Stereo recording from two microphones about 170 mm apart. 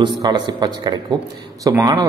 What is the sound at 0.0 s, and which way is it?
A man's voice, 25° right (ahead or behind).